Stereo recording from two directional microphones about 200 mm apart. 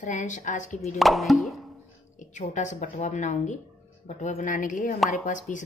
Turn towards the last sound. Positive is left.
turn(degrees=35)  # may be behind; listen again after turning